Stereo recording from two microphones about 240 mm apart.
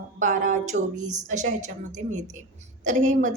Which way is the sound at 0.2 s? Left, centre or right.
Right.